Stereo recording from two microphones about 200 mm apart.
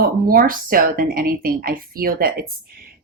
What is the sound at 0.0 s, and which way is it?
Speech, 45° right (ahead or behind).